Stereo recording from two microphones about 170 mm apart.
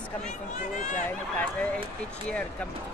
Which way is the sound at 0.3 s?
45° left (ahead or behind).